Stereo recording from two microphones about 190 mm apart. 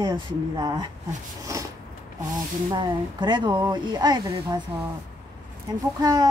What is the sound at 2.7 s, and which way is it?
Speech, 20° right (ahead or behind).